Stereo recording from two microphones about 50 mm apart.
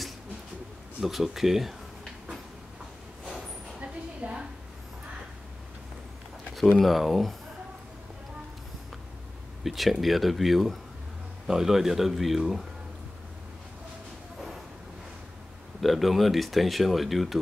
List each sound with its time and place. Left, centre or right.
1.0 s speech: centre
3.8 s a sound: right
6.8 s speech: centre
9.6 s speech: centre
15.8 s speech: centre